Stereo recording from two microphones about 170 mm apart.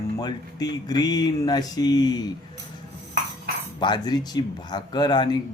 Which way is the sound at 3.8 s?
25° left (ahead or behind).